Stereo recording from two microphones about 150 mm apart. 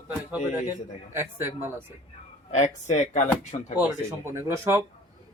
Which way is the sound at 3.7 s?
15° right (ahead or behind).